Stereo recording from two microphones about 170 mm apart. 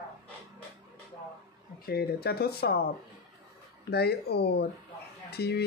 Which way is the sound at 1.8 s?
65° left (ahead or behind).